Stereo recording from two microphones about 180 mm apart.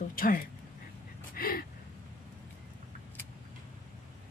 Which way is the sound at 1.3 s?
55° left (ahead or behind).